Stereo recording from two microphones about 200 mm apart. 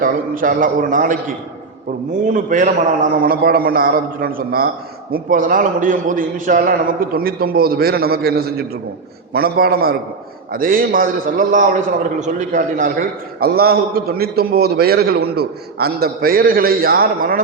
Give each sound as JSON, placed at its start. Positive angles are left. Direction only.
{"t": 0.0, "sound": "a man's voice", "side_deg": -45}
{"t": 2.2, "sound": "a man's voice", "side_deg": -40}